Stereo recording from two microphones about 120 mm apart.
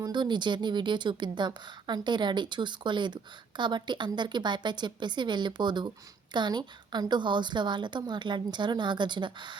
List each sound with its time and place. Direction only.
0.0 s a woman's voice: 40° right (ahead or behind)